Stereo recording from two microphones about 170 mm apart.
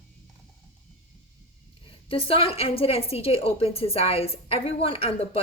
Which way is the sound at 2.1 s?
35° left (ahead or behind).